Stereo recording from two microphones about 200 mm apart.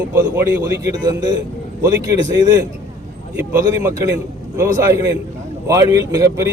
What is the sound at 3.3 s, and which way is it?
A man's voice, 15° right (ahead or behind).